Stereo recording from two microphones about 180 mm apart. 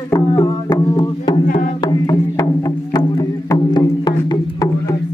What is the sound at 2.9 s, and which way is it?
Music, 25° left (ahead or behind).